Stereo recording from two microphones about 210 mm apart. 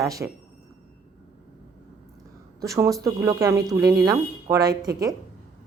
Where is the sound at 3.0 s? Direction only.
15° right (ahead or behind).